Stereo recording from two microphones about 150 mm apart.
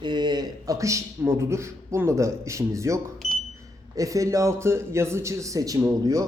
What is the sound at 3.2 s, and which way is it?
Smoke detector, 50° left (ahead or behind).